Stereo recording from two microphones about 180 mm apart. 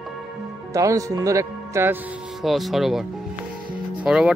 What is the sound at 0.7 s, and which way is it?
Speech, 20° right (ahead or behind).